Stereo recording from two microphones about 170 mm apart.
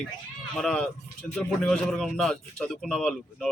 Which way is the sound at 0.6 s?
5° left (ahead or behind).